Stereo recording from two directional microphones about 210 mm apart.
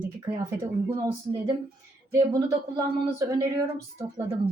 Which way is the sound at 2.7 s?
15° right (ahead or behind).